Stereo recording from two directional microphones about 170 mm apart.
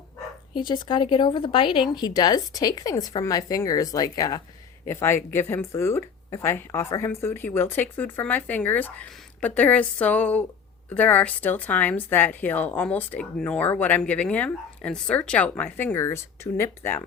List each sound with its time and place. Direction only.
0.5 s a woman's voice: 25° left (ahead or behind)